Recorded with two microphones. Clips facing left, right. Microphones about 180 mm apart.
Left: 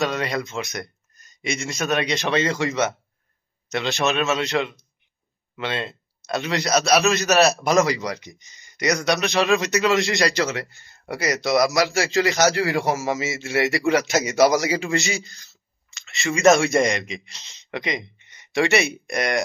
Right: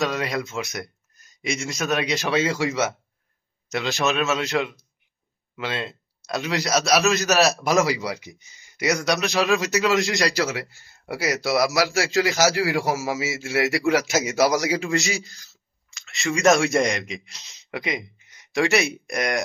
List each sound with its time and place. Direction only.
0.0 s a man's voice: centre (ahead or behind)